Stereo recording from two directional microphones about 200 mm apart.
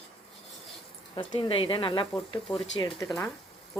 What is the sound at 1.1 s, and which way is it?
Speech, 25° left (ahead or behind).